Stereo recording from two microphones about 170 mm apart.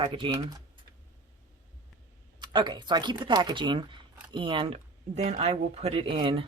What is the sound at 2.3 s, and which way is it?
A woman's voice, 25° right (ahead or behind).